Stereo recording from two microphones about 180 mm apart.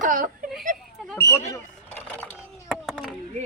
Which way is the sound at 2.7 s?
5° right (ahead or behind).